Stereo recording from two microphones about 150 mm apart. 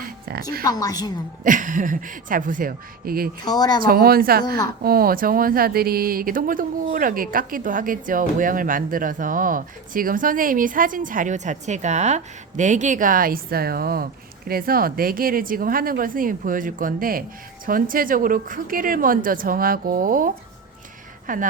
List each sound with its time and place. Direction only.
0.0 s a sound: 85° right
0.6 s a woman's voice: 25° left (ahead or behind)
1.5 s speech: 60° right (ahead or behind); by 3.2 s 75° right (ahead or behind)
3.4 s a woman's voice: 25° left (ahead or behind)
3.8 s speech: 85° right; by 21.4 s 60° right (ahead or behind)